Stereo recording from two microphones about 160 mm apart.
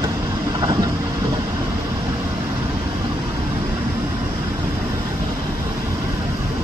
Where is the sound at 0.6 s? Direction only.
20° right (ahead or behind).